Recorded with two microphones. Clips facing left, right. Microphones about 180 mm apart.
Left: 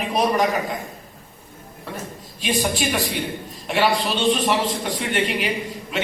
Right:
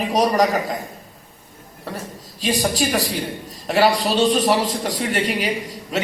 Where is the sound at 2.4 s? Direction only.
40° right (ahead or behind).